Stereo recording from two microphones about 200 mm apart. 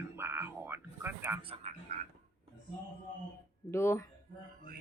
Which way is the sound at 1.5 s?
35° right (ahead or behind).